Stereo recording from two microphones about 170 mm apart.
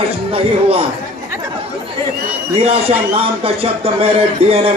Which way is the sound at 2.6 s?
35° right (ahead or behind).